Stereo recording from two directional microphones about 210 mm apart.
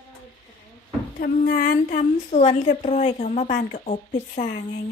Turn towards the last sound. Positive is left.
turn(degrees=35)  # may be behind; listen again after turning